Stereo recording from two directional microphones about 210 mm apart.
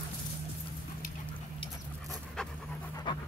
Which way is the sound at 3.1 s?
20° left (ahead or behind).